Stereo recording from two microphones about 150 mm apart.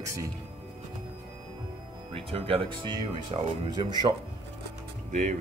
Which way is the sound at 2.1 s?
40° right (ahead or behind).